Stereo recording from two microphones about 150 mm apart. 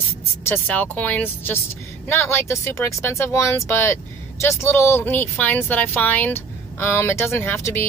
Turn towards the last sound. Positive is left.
turn(degrees=15)  # may be behind; listen again after turning